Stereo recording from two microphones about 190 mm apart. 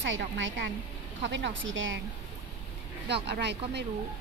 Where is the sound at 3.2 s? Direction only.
60° right (ahead or behind).